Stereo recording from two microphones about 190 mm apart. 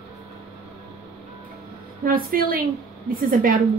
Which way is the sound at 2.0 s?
50° right (ahead or behind).